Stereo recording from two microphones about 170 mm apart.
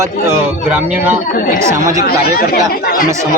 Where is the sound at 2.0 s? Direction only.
65° left (ahead or behind).